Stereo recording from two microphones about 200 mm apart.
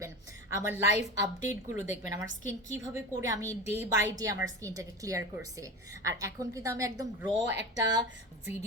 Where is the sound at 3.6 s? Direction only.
35° left (ahead or behind).